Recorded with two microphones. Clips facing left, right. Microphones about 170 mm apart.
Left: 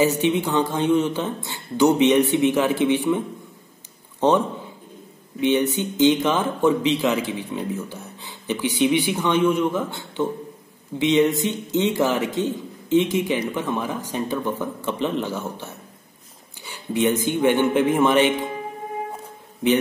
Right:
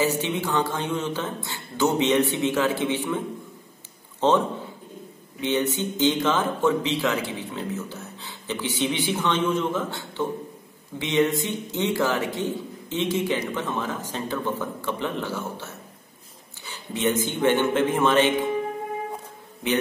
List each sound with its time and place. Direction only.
0.0 s speech: 15° left (ahead or behind)
5.4 s speech: 15° left (ahead or behind)